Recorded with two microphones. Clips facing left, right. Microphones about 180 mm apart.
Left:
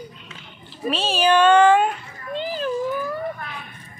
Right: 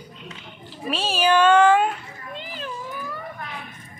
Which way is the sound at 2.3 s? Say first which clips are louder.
Left 9 dB; 35° left (ahead or behind).